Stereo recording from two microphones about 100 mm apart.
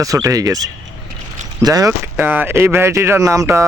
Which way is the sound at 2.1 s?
20° right (ahead or behind).